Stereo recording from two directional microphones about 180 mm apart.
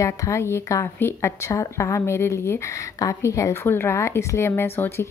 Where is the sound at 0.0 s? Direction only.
15° left (ahead or behind).